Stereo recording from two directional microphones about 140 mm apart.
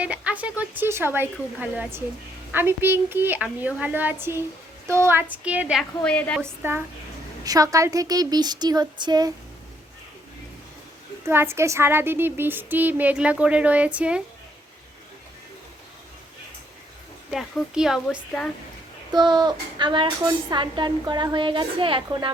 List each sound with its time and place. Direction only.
0.0 s a sound: 10° right (ahead or behind)
0.6 s speech: 15° right (ahead or behind)
6.0 s a woman's voice: 10° left (ahead or behind)
6.4 s speech: 15° right (ahead or behind)
7.4 s a woman's voice: 25° right (ahead or behind)
11.3 s speech: 15° right (ahead or behind)
17.3 s speech: centre (ahead or behind)
19.1 s a woman's voice: 30° right (ahead or behind)